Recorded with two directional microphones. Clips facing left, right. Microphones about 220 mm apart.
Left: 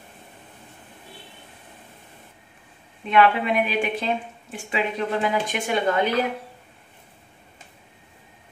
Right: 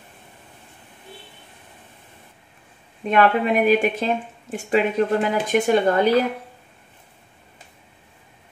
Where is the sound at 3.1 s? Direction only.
45° right (ahead or behind).